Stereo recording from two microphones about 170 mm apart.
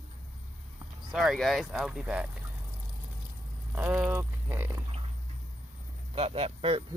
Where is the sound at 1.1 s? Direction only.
Centre (ahead or behind).